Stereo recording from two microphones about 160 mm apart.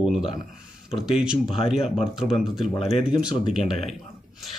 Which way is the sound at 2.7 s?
40° left (ahead or behind).